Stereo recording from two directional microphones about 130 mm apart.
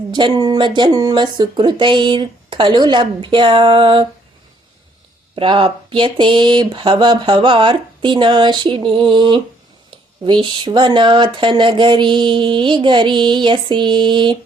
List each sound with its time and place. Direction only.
0.1 s speech: 35° right (ahead or behind)
5.3 s speech: 40° right (ahead or behind)